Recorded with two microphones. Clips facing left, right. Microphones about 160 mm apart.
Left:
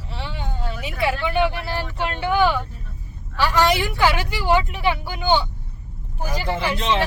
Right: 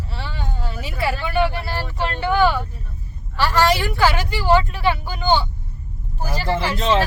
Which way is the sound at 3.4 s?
15° left (ahead or behind).